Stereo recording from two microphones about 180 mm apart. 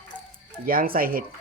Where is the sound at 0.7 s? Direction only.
55° right (ahead or behind).